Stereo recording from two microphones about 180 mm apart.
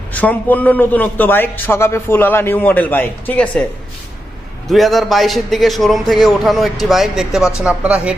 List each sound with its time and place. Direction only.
0.1 s a man's voice: 10° left (ahead or behind)
4.7 s a man's voice: centre (ahead or behind)